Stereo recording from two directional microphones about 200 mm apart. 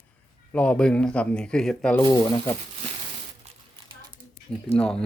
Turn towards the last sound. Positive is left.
turn(degrees=5)  # may be behind; listen again after turning